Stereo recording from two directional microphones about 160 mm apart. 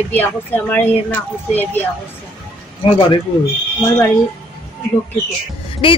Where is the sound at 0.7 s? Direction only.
10° left (ahead or behind).